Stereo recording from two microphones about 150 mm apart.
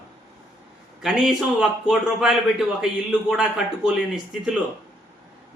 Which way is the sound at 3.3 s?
5° right (ahead or behind).